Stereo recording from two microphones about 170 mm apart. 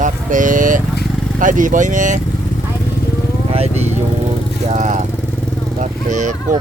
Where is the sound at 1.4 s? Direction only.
50° right (ahead or behind).